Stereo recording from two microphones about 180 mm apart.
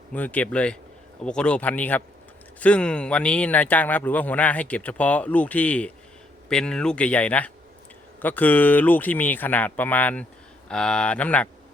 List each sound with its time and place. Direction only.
0.1 s speech: 10° left (ahead or behind)